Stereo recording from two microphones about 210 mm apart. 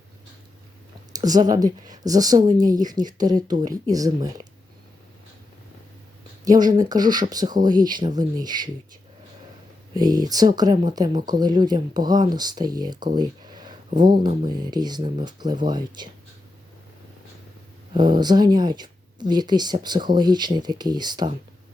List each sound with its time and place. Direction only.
1.1 s speech: 20° right (ahead or behind)
6.4 s speech: 20° right (ahead or behind)
9.9 s speech: 20° right (ahead or behind)
17.9 s speech: 20° right (ahead or behind)